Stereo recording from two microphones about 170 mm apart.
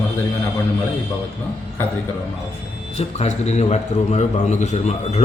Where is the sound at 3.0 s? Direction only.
40° left (ahead or behind).